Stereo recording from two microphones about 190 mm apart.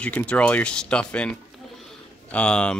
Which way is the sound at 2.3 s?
5° left (ahead or behind).